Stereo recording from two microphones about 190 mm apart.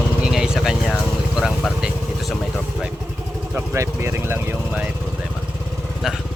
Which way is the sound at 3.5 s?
15° right (ahead or behind).